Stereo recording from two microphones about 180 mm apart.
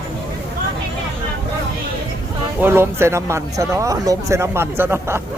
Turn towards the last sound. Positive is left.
turn(degrees=-15)  # may be behind; listen again after turning